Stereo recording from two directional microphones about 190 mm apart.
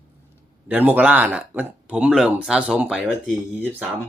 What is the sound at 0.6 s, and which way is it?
Speech, 10° right (ahead or behind).